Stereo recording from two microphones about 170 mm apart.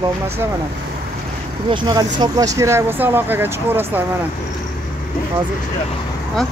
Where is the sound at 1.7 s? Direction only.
25° right (ahead or behind).